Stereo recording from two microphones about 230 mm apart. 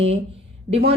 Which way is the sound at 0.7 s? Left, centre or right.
Right.